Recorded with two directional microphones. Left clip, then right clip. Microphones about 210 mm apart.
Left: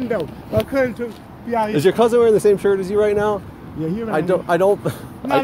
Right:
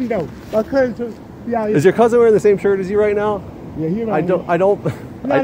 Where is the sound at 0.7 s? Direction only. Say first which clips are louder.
Right 3 dB; 5° left (ahead or behind).